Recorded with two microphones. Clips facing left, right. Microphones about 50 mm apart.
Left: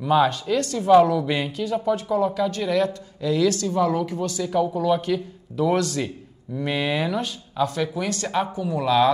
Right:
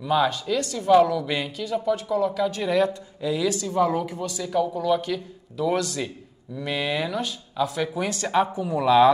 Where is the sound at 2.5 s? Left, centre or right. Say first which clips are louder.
Even; centre.